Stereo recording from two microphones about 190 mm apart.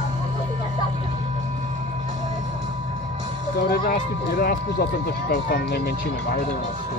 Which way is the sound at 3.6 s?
45° left (ahead or behind).